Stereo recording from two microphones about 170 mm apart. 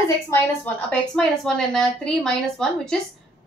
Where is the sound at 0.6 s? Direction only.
5° left (ahead or behind).